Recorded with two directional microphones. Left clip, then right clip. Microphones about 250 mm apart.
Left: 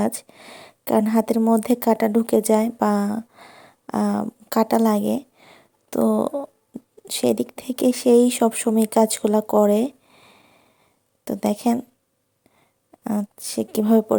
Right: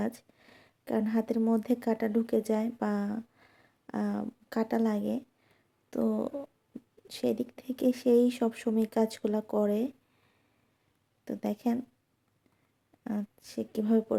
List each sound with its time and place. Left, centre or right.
0.0 s speech: left
13.1 s speech: left